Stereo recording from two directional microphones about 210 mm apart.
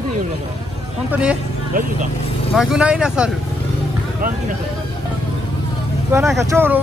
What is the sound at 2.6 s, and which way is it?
Speech, 5° right (ahead or behind).